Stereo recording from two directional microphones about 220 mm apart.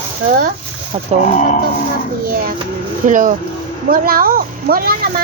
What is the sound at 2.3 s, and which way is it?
Speech, 40° right (ahead or behind).